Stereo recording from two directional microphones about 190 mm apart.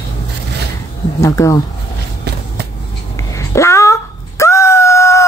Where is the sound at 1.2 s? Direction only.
15° left (ahead or behind).